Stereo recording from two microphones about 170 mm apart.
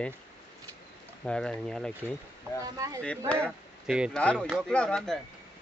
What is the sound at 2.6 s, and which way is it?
Speech, 20° right (ahead or behind).